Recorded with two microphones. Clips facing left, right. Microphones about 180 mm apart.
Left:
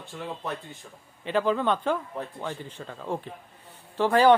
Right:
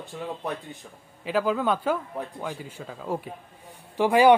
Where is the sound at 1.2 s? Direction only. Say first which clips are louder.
Even; 5° right (ahead or behind).